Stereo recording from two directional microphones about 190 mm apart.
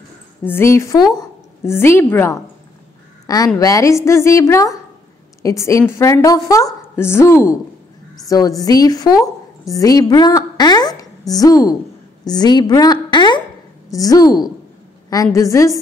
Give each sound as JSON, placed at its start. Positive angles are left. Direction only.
{"t": 0.4, "sound": "a woman's voice", "side_deg": 10}